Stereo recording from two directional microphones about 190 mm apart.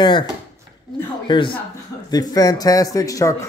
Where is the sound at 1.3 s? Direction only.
25° left (ahead or behind).